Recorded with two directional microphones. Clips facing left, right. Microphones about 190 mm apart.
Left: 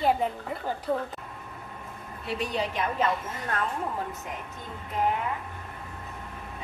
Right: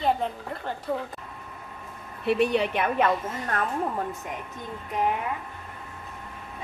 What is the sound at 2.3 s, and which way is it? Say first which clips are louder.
Speech: right 7 dB; 65° right (ahead or behind).